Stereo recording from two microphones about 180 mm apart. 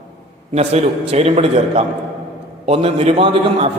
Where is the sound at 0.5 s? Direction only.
35° right (ahead or behind).